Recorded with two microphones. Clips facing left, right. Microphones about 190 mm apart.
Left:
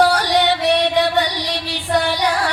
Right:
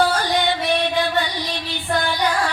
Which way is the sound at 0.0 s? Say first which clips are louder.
Left 4 dB; 70° left (ahead or behind).